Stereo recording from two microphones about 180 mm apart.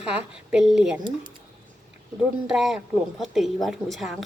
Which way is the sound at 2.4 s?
Centre (ahead or behind).